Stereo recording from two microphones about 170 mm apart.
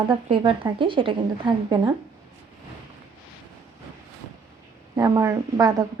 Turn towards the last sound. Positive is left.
turn(degrees=-20)  # may be behind; listen again after turning